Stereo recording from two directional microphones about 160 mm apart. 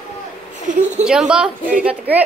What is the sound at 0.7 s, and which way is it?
Speech, 50° right (ahead or behind).